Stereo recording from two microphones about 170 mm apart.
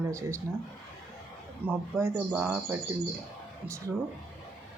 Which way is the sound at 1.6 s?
15° right (ahead or behind).